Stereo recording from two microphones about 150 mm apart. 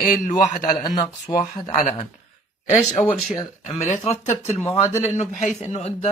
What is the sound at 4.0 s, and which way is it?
Speech, 45° left (ahead or behind).